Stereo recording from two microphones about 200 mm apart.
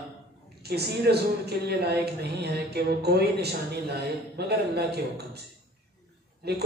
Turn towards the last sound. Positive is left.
turn(degrees=-55)  # may be behind; listen again after turning